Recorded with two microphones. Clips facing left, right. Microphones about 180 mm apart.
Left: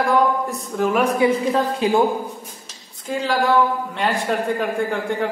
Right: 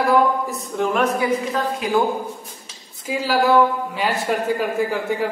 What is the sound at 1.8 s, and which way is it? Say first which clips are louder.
Speech: left 4 dB; 30° left (ahead or behind).